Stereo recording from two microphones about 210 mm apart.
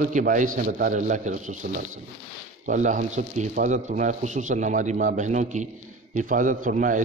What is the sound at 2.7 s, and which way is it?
Speech, 35° right (ahead or behind).